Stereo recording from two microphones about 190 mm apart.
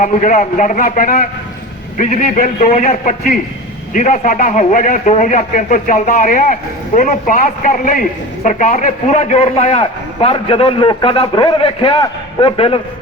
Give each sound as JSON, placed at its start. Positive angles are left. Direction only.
{"t": 0.0, "sound": "a man's voice", "side_deg": 45}